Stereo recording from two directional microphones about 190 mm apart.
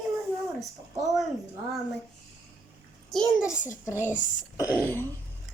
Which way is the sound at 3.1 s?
Centre (ahead or behind).